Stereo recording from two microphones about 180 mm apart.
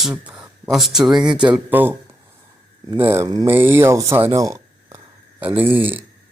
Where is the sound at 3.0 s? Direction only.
15° right (ahead or behind).